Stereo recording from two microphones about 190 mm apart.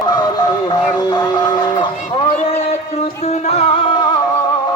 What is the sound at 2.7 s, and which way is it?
Music, 35° left (ahead or behind).